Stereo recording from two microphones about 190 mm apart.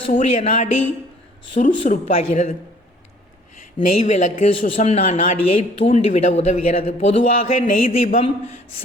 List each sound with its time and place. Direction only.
0.1 s speech: 40° left (ahead or behind)
4.0 s speech: 35° left (ahead or behind)